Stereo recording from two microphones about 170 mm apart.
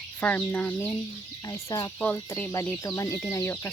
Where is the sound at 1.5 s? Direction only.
20° left (ahead or behind).